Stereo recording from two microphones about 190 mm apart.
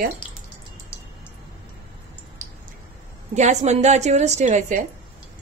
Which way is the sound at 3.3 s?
35° right (ahead or behind).